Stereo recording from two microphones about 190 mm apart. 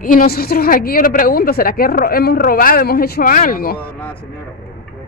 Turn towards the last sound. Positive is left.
turn(degrees=50)  # may be behind; listen again after turning